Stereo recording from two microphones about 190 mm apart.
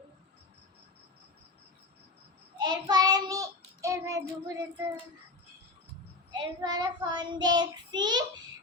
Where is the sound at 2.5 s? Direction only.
20° right (ahead or behind).